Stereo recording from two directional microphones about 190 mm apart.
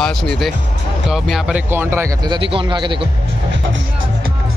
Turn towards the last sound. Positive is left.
turn(degrees=-25)  # may be behind; listen again after turning